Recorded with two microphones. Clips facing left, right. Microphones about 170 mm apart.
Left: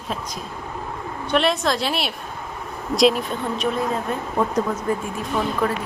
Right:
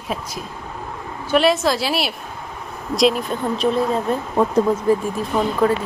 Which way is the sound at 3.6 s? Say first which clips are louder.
Right 5 dB; 30° right (ahead or behind).